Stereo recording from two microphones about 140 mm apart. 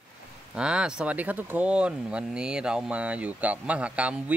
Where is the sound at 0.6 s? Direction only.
5° right (ahead or behind).